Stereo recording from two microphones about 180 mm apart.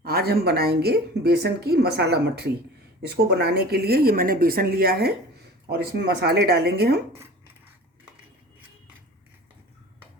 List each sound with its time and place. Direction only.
0.0 s speech: 60° right (ahead or behind)